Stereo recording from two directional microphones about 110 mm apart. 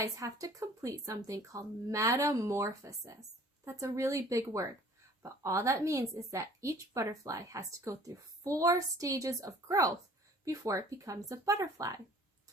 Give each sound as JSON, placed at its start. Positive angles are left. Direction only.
{"t": 0.0, "sound": "a woman's voice", "side_deg": -30}